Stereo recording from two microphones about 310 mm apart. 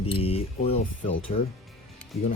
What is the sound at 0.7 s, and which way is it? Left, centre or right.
Speech, left.